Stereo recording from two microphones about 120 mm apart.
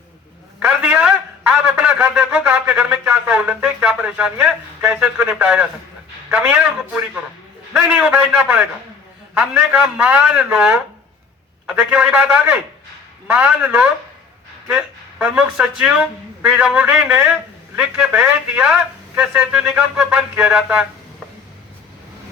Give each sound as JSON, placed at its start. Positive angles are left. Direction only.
{"t": 0.6, "sound": "a man's voice", "side_deg": -10}